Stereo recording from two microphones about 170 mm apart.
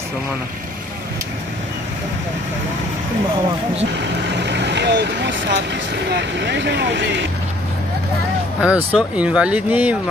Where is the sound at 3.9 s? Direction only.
90° right.